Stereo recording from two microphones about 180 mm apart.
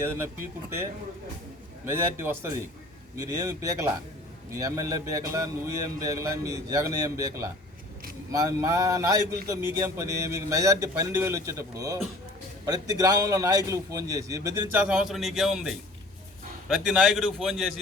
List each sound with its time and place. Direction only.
0.0 s a man's voice: 15° right (ahead or behind)
1.8 s a man's voice: 15° right (ahead or behind)
14.8 s a man's voice: 5° right (ahead or behind)